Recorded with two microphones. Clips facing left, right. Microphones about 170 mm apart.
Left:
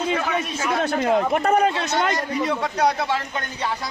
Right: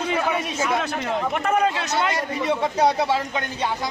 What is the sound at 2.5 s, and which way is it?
Speech, 25° right (ahead or behind).